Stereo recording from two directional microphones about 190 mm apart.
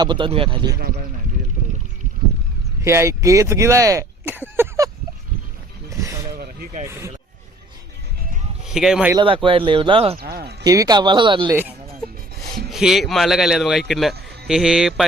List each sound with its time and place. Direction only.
0.0 s speech: 25° right (ahead or behind)
0.8 s speech: 50° right (ahead or behind)
2.8 s speech: 15° right (ahead or behind)
5.9 s a sound: 15° right (ahead or behind)
6.3 s vehicle: 50° right (ahead or behind)
6.8 s speech: 15° right (ahead or behind)
8.6 s speech: centre (ahead or behind)
9.1 s speech: 25° right (ahead or behind)
10.2 s a sound: 55° right (ahead or behind)
10.6 s speech: 20° right (ahead or behind)
11.4 s speech: 10° right (ahead or behind)